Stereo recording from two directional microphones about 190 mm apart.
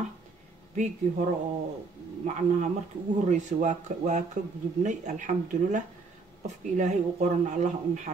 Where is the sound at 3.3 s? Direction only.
40° right (ahead or behind).